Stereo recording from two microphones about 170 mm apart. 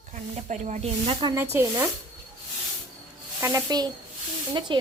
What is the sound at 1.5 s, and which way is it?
Speech, 15° right (ahead or behind).